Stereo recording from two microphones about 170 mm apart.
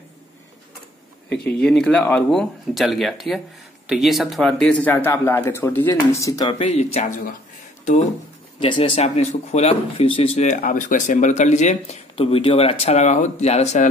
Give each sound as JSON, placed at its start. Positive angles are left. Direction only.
{"t": 1.3, "sound": "speech", "side_deg": 75}
{"t": 1.6, "sound": "speech", "side_deg": 5}
{"t": 6.6, "sound": "speech", "side_deg": 35}
{"t": 8.5, "sound": "speech", "side_deg": 30}